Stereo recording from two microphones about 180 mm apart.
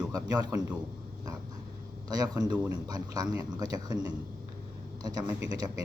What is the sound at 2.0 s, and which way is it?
A man's voice, 20° right (ahead or behind).